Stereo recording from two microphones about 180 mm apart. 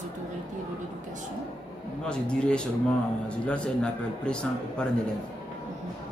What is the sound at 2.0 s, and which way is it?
A man's voice, 5° left (ahead or behind).